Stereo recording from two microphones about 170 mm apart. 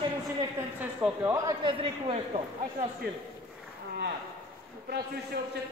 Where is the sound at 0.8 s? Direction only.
10° right (ahead or behind).